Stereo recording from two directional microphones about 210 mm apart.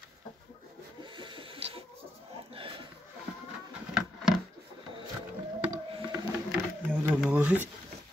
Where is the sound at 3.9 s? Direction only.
Centre (ahead or behind).